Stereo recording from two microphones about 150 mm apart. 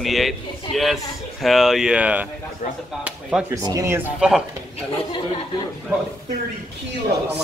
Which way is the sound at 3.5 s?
20° right (ahead or behind).